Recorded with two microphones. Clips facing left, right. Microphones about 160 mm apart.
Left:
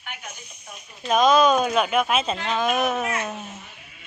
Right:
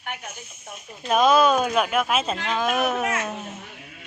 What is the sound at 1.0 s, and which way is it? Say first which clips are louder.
Speech: even; 5° right (ahead or behind).